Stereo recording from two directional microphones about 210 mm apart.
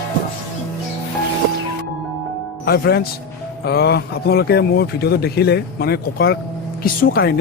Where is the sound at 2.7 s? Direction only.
50° left (ahead or behind).